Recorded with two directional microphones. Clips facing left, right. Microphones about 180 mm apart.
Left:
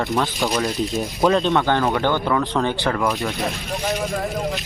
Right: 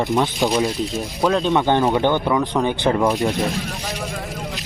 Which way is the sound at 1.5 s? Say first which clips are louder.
Right 2 dB; 15° right (ahead or behind).